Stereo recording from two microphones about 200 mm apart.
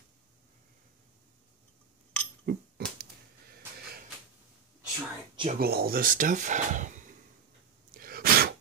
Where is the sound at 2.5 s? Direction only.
45° right (ahead or behind).